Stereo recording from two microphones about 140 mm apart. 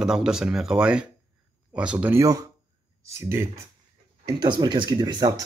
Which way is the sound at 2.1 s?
25° right (ahead or behind).